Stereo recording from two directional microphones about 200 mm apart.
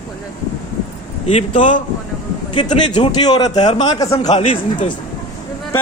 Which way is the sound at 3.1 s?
20° left (ahead or behind).